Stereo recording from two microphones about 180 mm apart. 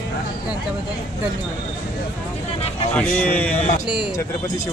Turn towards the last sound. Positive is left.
turn(degrees=25)  # may be behind; listen again after turning